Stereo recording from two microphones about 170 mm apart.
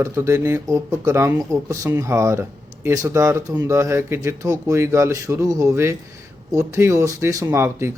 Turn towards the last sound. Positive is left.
turn(degrees=-15)  # may be behind; listen again after turning